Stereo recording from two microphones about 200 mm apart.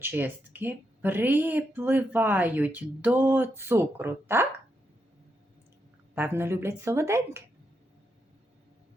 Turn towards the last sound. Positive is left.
turn(degrees=-15)  # may be behind; listen again after turning